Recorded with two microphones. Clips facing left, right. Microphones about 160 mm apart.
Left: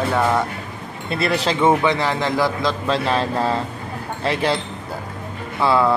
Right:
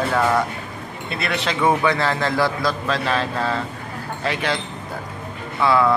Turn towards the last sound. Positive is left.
turn(degrees=30)  # may be behind; listen again after turning